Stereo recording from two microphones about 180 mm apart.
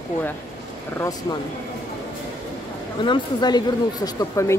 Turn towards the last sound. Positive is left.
turn(degrees=15)  # may be behind; listen again after turning